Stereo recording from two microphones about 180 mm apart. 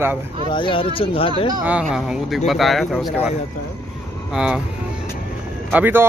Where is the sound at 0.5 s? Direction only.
25° left (ahead or behind).